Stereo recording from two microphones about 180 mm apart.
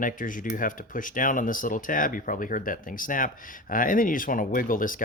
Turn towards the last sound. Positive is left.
turn(degrees=50)  # may be behind; listen again after turning